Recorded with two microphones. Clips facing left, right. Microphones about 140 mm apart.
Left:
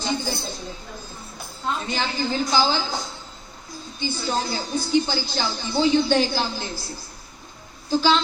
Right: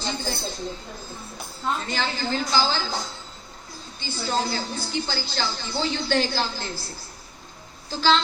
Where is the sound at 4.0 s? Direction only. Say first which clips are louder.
Left 1 dB; 15° left (ahead or behind).